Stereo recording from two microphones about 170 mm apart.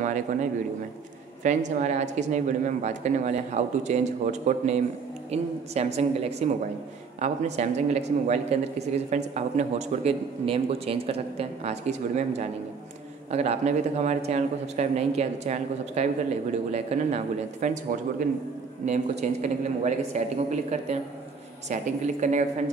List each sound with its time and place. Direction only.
0.0 s a sound: 50° right (ahead or behind)
1.4 s a man's voice: 45° right (ahead or behind)
18.9 s speech: 45° right (ahead or behind)